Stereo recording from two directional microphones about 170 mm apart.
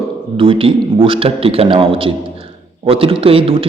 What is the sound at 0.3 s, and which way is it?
A man's voice, 30° right (ahead or behind).